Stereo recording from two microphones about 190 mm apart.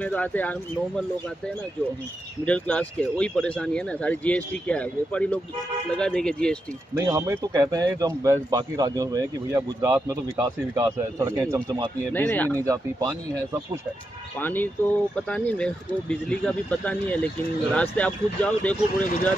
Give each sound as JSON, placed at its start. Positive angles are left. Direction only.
{"t": 0.0, "sound": "speech", "side_deg": 10}
{"t": 2.4, "sound": "speech", "side_deg": 5}
{"t": 7.1, "sound": "speech", "side_deg": -15}
{"t": 12.1, "sound": "speech", "side_deg": 10}
{"t": 12.6, "sound": "speech", "side_deg": -20}
{"t": 14.4, "sound": "speech", "side_deg": 10}